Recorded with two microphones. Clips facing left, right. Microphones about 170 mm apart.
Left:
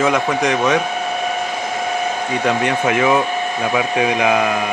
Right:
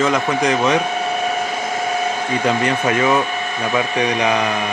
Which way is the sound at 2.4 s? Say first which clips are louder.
Left 1 dB; centre (ahead or behind).